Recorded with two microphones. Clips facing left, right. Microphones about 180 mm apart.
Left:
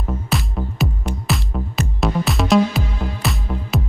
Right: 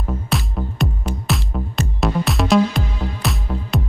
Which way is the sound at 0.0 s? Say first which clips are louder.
Even; centre (ahead or behind).